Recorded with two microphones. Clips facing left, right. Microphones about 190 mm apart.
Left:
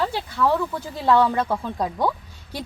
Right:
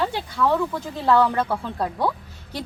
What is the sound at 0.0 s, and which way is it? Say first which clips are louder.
Speech: even; centre (ahead or behind).